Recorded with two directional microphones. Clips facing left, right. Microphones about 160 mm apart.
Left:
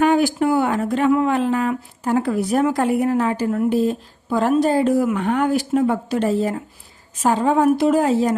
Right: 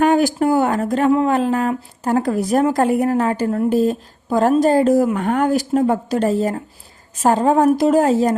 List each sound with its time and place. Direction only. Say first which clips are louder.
0.0 s speech: right 1 dB; 45° right (ahead or behind)